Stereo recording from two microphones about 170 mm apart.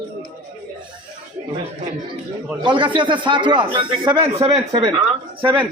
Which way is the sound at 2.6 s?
30° right (ahead or behind).